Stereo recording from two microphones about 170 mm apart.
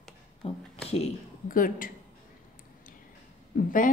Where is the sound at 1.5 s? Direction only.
55° left (ahead or behind).